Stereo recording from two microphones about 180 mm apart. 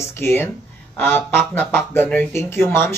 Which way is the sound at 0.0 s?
15° left (ahead or behind).